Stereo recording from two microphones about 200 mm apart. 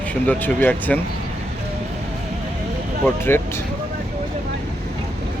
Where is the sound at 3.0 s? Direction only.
10° left (ahead or behind).